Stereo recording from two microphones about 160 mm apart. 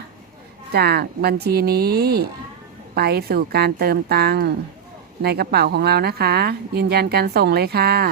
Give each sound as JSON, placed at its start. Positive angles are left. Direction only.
{"t": 0.7, "sound": "speech", "side_deg": -80}